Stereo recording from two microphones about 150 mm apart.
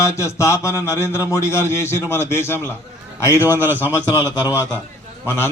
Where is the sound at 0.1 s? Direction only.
20° left (ahead or behind).